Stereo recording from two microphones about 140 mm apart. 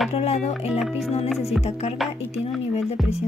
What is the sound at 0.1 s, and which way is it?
Speech, 45° left (ahead or behind).